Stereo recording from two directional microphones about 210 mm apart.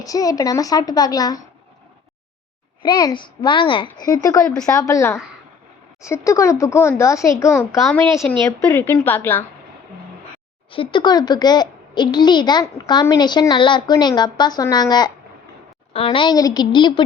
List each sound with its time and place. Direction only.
0.0 s a child's voice: 15° left (ahead or behind)
2.8 s a child's voice: 20° left (ahead or behind)
4.4 s a woman's voice: 5° left (ahead or behind)
4.7 s a child's voice: 15° left (ahead or behind)
10.7 s a child's voice: 25° left (ahead or behind)